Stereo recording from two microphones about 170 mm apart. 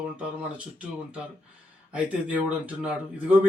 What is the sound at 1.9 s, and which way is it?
A man's voice, 10° right (ahead or behind).